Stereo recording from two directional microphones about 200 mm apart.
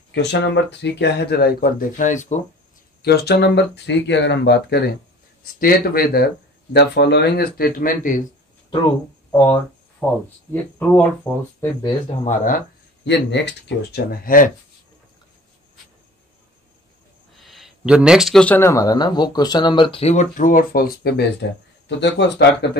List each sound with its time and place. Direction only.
0.1 s speech: 60° left (ahead or behind); by 2.4 s 35° left (ahead or behind)
3.0 s speech: 55° left (ahead or behind)
9.3 s a sound: 10° left (ahead or behind)
10.5 s speech: 10° left (ahead or behind)
12.3 s speech: 45° left (ahead or behind)
13.0 s speech: 60° left (ahead or behind); by 14.5 s 45° left (ahead or behind)
17.4 s speech: centre (ahead or behind); by 22.7 s 60° left (ahead or behind)